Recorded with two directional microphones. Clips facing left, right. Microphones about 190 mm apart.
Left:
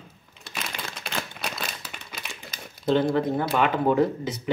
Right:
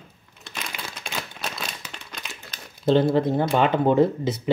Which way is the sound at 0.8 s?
5° right (ahead or behind).